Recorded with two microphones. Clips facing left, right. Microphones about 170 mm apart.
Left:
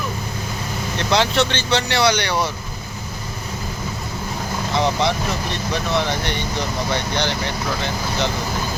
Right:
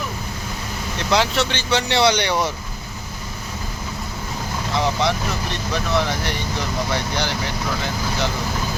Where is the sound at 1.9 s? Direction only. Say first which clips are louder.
Right 3 dB; 20° right (ahead or behind).